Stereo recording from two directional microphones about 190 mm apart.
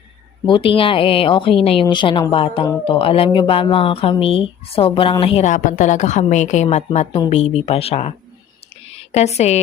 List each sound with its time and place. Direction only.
0.4 s a woman's voice: 25° left (ahead or behind)